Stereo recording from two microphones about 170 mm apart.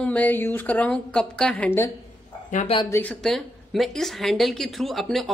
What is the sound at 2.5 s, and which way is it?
Speech, 45° left (ahead or behind).